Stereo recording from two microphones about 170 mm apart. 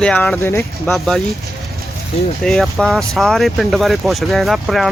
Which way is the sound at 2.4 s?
Centre (ahead or behind).